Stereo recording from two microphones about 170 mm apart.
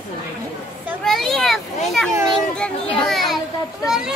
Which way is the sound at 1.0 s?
Centre (ahead or behind).